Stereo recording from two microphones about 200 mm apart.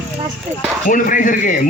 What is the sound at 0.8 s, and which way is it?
Speech, 40° left (ahead or behind).